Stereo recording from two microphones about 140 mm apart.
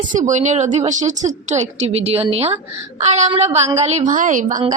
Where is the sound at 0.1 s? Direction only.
60° right (ahead or behind).